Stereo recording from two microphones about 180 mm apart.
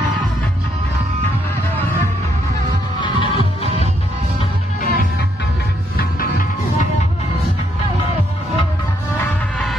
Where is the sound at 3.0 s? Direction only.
30° left (ahead or behind).